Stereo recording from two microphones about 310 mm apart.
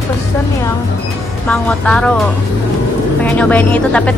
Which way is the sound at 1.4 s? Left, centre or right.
Centre.